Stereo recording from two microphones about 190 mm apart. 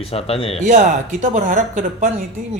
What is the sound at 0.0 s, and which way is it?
Speech, 30° left (ahead or behind).